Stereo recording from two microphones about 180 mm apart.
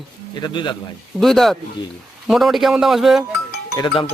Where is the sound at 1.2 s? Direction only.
Centre (ahead or behind).